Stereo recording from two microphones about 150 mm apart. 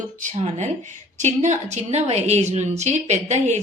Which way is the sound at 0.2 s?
50° right (ahead or behind).